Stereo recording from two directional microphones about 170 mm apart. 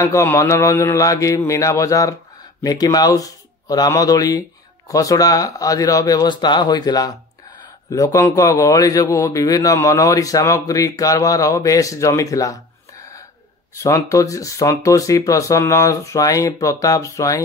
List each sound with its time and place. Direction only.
0.0 s a man's voice: 15° left (ahead or behind)
13.7 s a man's voice: 15° left (ahead or behind)